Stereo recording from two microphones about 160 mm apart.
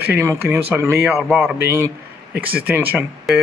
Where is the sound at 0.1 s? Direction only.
15° right (ahead or behind).